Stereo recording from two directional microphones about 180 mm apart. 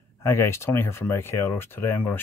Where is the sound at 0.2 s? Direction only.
15° left (ahead or behind).